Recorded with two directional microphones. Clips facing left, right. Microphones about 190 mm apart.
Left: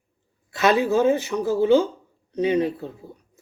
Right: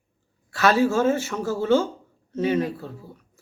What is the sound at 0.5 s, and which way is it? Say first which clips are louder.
Speech: left 1 dB; 20° left (ahead or behind).